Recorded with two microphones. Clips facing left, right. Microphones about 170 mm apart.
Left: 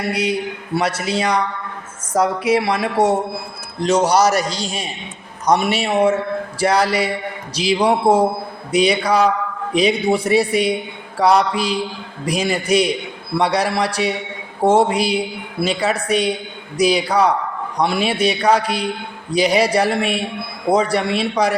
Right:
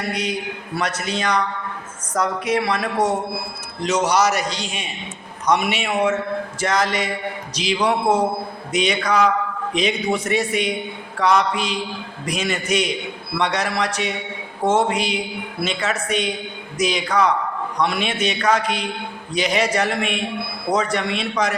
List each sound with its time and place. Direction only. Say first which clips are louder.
0.1 s a man's voice: left 6 dB; 10° left (ahead or behind)
1.0 s a man's voice: left 3 dB; 35° left (ahead or behind)